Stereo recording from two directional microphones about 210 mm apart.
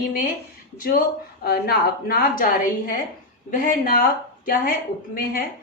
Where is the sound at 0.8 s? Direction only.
45° left (ahead or behind).